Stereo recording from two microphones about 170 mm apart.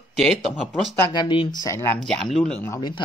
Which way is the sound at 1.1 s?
25° left (ahead or behind).